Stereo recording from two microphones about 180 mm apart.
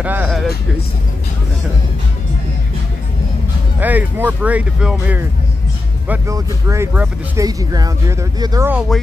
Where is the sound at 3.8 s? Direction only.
10° right (ahead or behind).